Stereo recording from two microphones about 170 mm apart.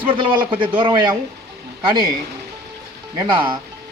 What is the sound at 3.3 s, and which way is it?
Speech, 30° right (ahead or behind).